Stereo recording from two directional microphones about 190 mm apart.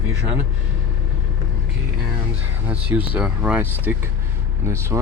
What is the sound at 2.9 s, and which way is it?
Speech, 10° right (ahead or behind).